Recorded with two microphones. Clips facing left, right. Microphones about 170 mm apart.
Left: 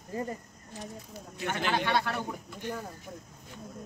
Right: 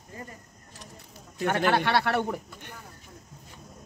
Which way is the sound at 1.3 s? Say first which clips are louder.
Right 6 dB; 55° right (ahead or behind).